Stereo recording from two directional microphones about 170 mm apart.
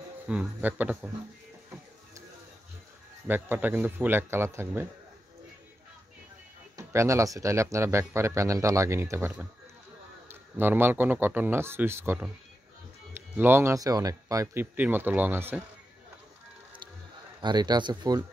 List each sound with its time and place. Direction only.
0.3 s speech: 10° right (ahead or behind)
3.3 s speech: 10° right (ahead or behind)
6.8 s speech: 15° right (ahead or behind)
17.4 s speech: 25° right (ahead or behind)